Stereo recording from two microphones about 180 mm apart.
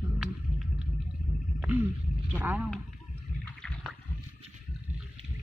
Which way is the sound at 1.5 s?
5° right (ahead or behind).